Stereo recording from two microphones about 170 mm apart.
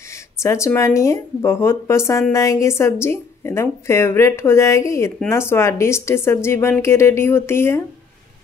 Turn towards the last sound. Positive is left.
turn(degrees=15)  # may be behind; listen again after turning